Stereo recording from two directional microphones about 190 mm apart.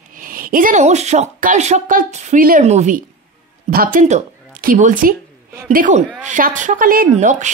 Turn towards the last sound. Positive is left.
turn(degrees=-40)  # may be behind; listen again after turning